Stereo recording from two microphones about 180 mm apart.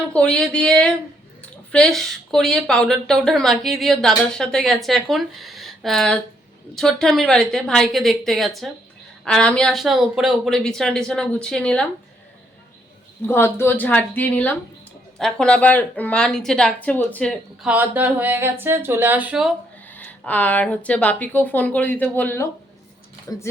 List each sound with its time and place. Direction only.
0.1 s speech: 5° left (ahead or behind)
13.2 s speech: 15° left (ahead or behind); by 19.5 s 5° right (ahead or behind)
19.8 s speech: 10° left (ahead or behind)